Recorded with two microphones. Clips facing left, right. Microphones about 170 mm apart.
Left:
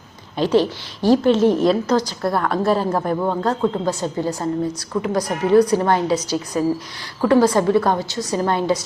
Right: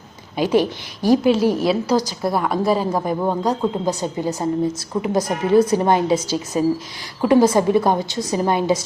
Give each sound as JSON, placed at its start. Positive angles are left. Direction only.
{"t": 0.3, "sound": "a woman's voice", "side_deg": -10}